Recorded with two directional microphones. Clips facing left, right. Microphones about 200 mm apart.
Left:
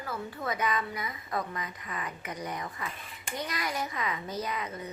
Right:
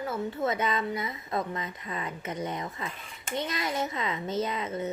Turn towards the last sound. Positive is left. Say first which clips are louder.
# right 5 dB
turn(degrees=-25)  # may be behind; listen again after turning